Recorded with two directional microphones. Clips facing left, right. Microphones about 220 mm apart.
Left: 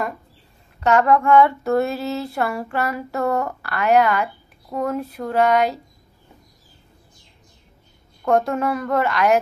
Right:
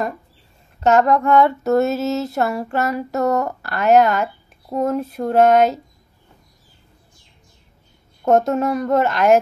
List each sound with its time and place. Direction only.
0.7 s a woman's voice: 40° right (ahead or behind)
8.3 s a woman's voice: 45° right (ahead or behind)